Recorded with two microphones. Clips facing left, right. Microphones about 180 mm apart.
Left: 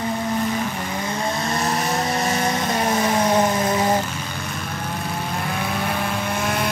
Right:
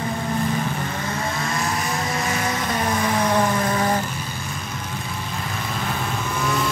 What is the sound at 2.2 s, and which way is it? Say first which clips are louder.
Vehicle: left 3 dB; 30° left (ahead or behind).